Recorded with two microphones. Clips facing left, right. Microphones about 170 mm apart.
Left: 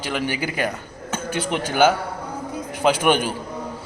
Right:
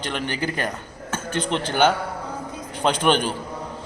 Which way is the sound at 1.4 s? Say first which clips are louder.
Left 2 dB; 10° left (ahead or behind).